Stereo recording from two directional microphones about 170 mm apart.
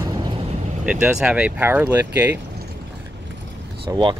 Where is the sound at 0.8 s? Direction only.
10° right (ahead or behind).